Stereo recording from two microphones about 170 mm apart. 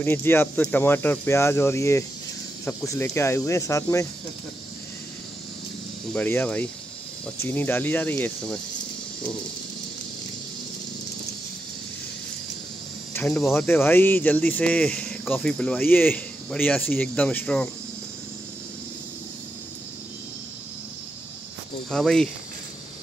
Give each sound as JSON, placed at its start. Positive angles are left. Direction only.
{"t": 0.0, "sound": "speech", "side_deg": 15}
{"t": 6.1, "sound": "speech", "side_deg": 10}
{"t": 13.1, "sound": "cricket", "side_deg": 5}
{"t": 13.5, "sound": "speech", "side_deg": 15}
{"t": 21.9, "sound": "speech", "side_deg": 5}